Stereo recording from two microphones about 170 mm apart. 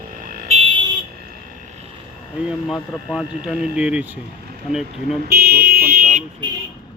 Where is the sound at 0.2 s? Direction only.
55° right (ahead or behind).